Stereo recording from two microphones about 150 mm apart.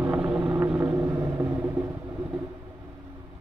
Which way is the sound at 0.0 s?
10° right (ahead or behind).